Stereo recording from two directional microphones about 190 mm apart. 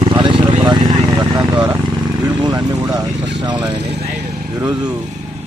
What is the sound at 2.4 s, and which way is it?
Vehicle, 20° right (ahead or behind).